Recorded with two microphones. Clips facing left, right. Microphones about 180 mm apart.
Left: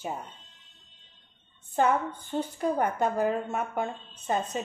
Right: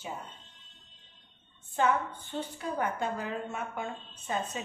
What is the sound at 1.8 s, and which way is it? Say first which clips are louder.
A woman's voice: left 3 dB; 50° left (ahead or behind).